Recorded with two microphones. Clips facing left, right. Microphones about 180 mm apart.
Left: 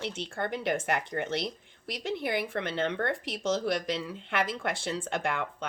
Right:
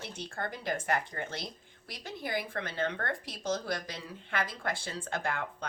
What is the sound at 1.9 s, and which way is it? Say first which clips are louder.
A woman's voice: left 5 dB; 70° left (ahead or behind).